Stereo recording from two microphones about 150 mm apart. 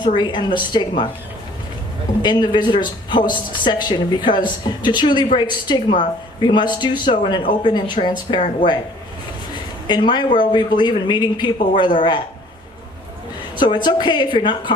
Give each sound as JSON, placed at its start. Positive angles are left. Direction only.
{"t": 0.0, "sound": "a woman's voice", "side_deg": 30}
{"t": 2.2, "sound": "a woman's voice", "side_deg": 30}
{"t": 9.8, "sound": "a woman's voice", "side_deg": 30}
{"t": 13.6, "sound": "a woman's voice", "side_deg": 30}